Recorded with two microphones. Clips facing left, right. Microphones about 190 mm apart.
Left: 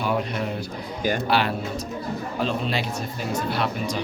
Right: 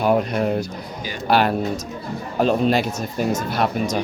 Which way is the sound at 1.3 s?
45° right (ahead or behind).